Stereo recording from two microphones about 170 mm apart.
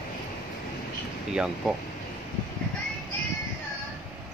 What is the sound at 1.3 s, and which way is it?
Speech, 5° right (ahead or behind).